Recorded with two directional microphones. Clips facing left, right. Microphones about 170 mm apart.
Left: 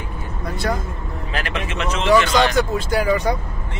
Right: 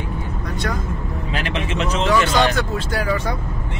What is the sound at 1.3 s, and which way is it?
Speech, 25° right (ahead or behind).